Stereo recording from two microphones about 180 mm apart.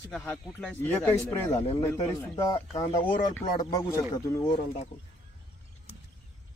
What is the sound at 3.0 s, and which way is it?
Speech, 50° left (ahead or behind).